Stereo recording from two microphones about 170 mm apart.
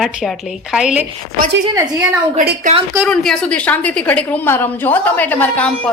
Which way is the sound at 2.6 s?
35° right (ahead or behind).